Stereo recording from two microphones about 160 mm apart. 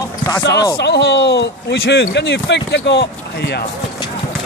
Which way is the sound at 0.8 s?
90° left.